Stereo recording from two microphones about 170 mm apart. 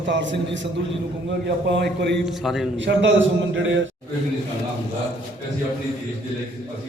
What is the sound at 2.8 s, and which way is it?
Speech, 90° right.